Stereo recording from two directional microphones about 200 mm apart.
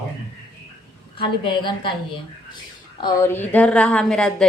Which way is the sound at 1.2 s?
25° left (ahead or behind).